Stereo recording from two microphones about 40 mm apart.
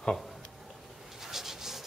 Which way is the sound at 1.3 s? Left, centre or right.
Centre.